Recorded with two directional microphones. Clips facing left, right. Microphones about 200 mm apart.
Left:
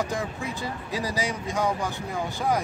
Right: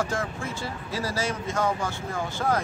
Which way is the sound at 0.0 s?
15° left (ahead or behind).